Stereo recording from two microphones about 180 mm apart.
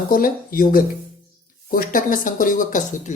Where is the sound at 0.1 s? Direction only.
50° left (ahead or behind).